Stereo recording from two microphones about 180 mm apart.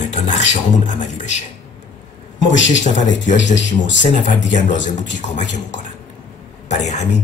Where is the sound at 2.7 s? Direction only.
45° left (ahead or behind).